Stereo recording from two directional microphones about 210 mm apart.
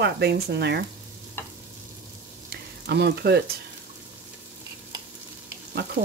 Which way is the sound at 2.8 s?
55° right (ahead or behind).